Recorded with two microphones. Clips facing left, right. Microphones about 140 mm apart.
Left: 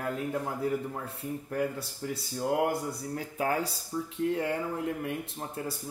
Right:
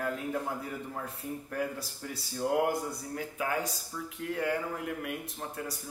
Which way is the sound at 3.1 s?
35° left (ahead or behind).